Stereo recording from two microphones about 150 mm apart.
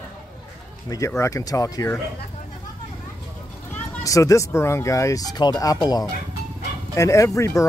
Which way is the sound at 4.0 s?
20° left (ahead or behind).